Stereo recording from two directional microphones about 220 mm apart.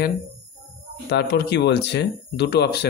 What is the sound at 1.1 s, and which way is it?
Speech, 50° left (ahead or behind).